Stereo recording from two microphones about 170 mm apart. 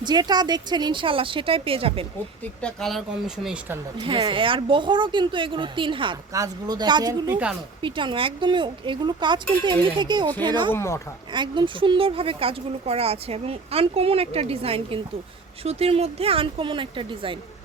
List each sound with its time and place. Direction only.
0.0 s speech: 25° right (ahead or behind)
2.6 s speech: 5° left (ahead or behind)
3.9 s speech: 30° right (ahead or behind)
10.7 s speech: 15° left (ahead or behind)
11.3 s speech: 25° right (ahead or behind)